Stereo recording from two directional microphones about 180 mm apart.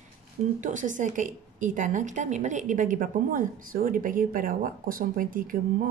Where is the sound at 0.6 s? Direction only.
45° right (ahead or behind).